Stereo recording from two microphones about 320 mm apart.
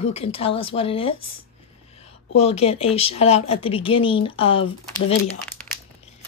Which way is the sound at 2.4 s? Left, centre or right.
Centre.